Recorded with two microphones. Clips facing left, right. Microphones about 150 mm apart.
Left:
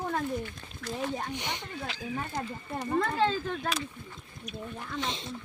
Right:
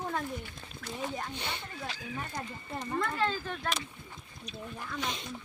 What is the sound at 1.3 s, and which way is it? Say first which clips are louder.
Snake: left 3 dB; 15° left (ahead or behind).